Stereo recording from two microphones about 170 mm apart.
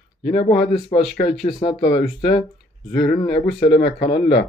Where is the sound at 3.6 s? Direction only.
80° left.